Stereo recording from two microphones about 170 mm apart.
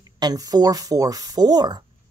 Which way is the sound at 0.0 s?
20° right (ahead or behind).